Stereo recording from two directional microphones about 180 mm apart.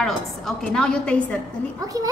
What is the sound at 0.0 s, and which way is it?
A woman's voice, centre (ahead or behind).